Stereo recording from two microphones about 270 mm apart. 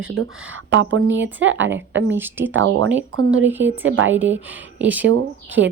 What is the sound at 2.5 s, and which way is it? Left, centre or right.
Speech, right.